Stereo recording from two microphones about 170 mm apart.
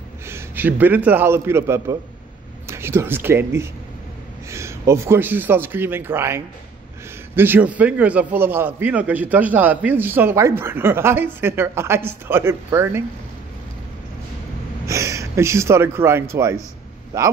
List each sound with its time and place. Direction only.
0.3 s a man's voice: 10° right (ahead or behind)
14.9 s speech: 20° right (ahead or behind)